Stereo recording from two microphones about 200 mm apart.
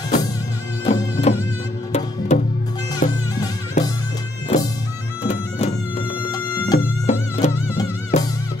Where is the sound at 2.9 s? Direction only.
20° left (ahead or behind).